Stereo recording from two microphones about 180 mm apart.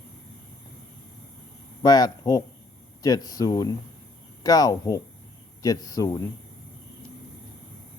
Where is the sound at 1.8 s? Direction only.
20° left (ahead or behind).